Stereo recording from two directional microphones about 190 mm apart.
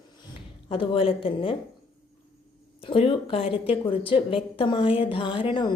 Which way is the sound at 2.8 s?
30° left (ahead or behind).